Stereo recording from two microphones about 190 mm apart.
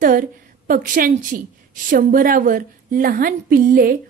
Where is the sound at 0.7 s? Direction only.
45° right (ahead or behind).